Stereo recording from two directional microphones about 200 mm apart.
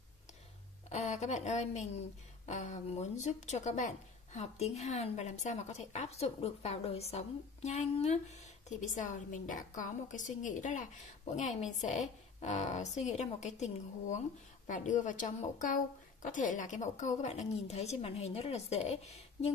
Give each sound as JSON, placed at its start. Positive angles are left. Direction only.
{"t": 0.9, "sound": "speech", "side_deg": 35}